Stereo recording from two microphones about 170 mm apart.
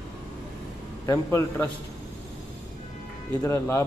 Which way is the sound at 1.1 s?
15° left (ahead or behind).